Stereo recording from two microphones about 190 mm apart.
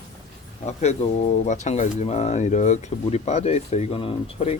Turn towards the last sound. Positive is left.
turn(degrees=30)  # may be behind; listen again after turning